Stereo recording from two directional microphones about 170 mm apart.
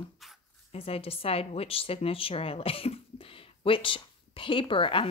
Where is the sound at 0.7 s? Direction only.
35° left (ahead or behind).